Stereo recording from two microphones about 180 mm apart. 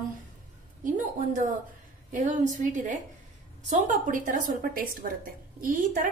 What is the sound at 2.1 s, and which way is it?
A woman's voice, 45° right (ahead or behind).